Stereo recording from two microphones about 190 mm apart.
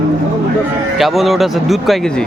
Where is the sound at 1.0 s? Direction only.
Centre (ahead or behind).